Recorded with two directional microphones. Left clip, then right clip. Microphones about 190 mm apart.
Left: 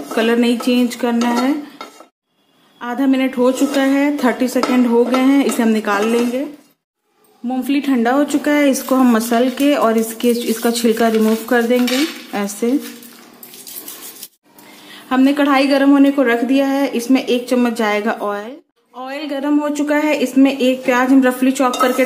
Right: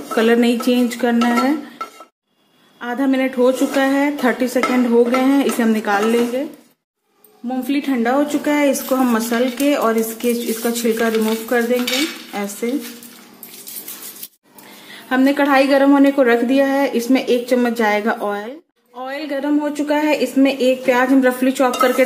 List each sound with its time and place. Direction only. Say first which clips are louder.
0.1 s speech: right 1 dB; 10° right (ahead or behind)
2.8 s a woman's voice: left 1 dB; 5° left (ahead or behind)
7.4 s a woman's voice: left 2 dB; 10° left (ahead or behind)
14.9 s a woman's voice: left 1 dB; centre (ahead or behind)